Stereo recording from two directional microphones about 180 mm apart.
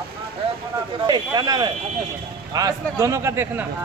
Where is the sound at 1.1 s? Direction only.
25° right (ahead or behind).